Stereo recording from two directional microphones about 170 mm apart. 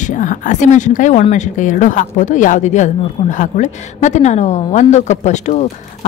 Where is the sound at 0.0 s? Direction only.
50° left (ahead or behind).